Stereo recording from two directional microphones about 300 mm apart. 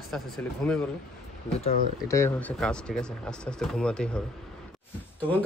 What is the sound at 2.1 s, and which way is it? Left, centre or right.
Speech, centre.